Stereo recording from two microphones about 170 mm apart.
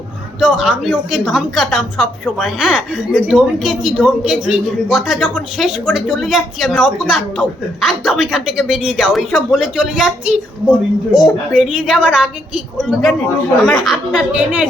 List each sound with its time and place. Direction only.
0.3 s speech: centre (ahead or behind)